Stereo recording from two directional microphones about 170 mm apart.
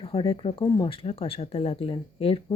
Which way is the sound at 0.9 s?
35° left (ahead or behind).